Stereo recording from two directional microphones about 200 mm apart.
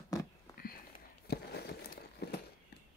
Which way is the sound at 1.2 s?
55° left (ahead or behind).